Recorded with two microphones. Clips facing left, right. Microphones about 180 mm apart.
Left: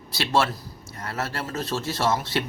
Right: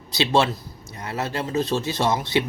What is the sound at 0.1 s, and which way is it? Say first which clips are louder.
Speech: right 3 dB; 20° right (ahead or behind).